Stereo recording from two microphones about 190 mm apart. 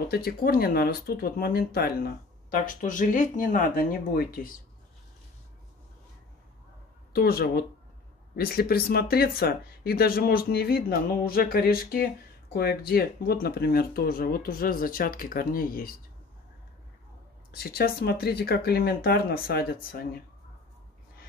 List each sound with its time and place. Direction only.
0.1 s speech: 55° left (ahead or behind)
7.1 s speech: 55° left (ahead or behind)
17.5 s speech: 55° left (ahead or behind)